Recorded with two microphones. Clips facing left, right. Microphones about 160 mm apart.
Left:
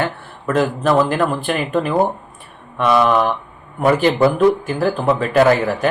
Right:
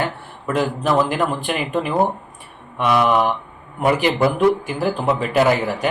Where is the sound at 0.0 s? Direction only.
15° right (ahead or behind).